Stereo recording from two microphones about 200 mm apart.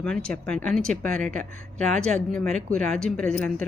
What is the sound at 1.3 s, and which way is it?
Speech, 35° right (ahead or behind).